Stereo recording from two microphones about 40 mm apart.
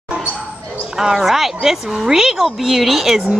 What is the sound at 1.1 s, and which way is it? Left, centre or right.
A woman's voice, centre.